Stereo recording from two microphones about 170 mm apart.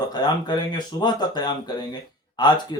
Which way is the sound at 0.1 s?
25° left (ahead or behind).